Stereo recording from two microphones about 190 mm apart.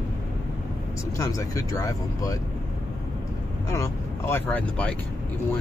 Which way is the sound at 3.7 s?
15° left (ahead or behind).